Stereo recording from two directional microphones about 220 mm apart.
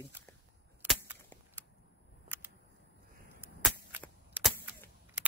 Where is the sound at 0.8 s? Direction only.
10° right (ahead or behind).